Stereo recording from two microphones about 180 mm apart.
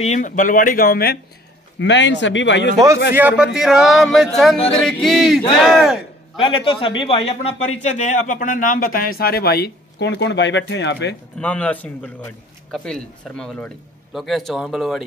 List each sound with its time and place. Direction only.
0.0 s a man's voice: 40° left (ahead or behind)
1.8 s speech: 80° left
3.2 s speech: 10° right (ahead or behind)
3.5 s a sound: 5° right (ahead or behind)
6.4 s a man's voice: 30° left (ahead or behind); by 11.1 s 75° left (ahead or behind)
11.3 s a man's voice: 5° left (ahead or behind)
12.7 s a sound: 5° left (ahead or behind)